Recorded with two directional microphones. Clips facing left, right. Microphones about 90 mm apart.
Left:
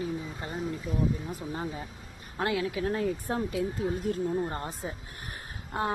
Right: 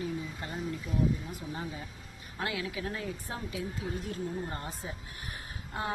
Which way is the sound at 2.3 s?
40° left (ahead or behind).